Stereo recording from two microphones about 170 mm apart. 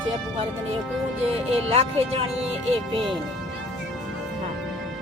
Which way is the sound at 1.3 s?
35° right (ahead or behind).